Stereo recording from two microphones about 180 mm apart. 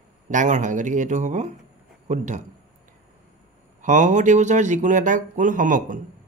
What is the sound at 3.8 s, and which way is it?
Speech, 45° right (ahead or behind).